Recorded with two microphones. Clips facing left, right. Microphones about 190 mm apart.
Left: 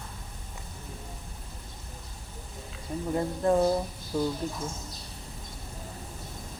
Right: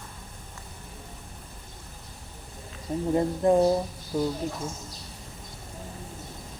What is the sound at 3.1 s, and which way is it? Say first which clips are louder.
Speech: right 3 dB; 20° right (ahead or behind).